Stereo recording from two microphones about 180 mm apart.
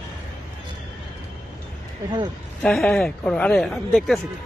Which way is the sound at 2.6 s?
5° left (ahead or behind).